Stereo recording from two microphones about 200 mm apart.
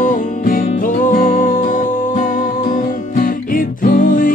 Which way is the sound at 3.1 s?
45° left (ahead or behind).